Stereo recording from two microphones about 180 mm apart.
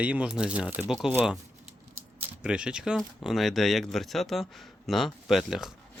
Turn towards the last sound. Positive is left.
turn(degrees=0)  # may be behind; listen again after turning